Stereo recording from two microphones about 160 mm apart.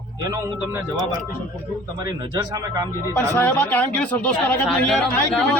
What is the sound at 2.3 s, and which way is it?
Speech, 20° right (ahead or behind).